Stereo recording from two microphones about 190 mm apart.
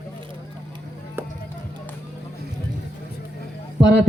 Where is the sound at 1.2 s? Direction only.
10° right (ahead or behind).